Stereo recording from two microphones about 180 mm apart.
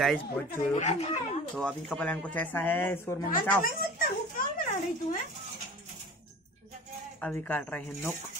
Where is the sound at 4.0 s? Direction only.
50° left (ahead or behind).